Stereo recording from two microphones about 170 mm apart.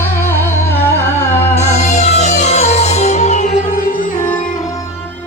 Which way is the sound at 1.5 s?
40° left (ahead or behind).